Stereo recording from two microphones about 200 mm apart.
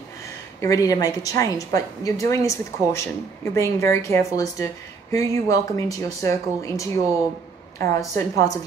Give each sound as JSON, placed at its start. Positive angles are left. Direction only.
{"t": 0.6, "sound": "a woman's voice", "side_deg": 15}
{"t": 7.9, "sound": "a woman's voice", "side_deg": 15}